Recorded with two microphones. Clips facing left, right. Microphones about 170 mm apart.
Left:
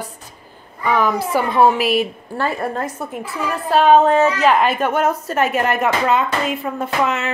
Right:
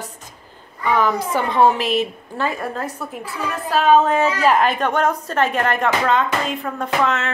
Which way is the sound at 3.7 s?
35° left (ahead or behind).